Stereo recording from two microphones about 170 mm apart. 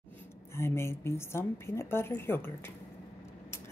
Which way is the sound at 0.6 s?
15° left (ahead or behind).